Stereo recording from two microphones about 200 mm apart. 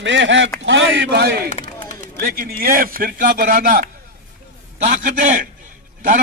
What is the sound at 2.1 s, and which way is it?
Speech, 50° right (ahead or behind).